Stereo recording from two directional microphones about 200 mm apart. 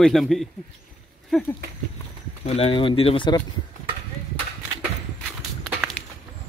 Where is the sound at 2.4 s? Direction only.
30° left (ahead or behind).